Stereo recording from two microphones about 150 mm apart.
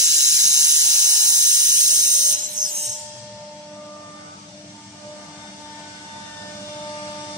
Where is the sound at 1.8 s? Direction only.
25° right (ahead or behind).